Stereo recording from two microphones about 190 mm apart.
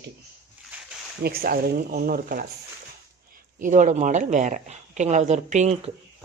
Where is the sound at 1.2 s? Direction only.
55° right (ahead or behind).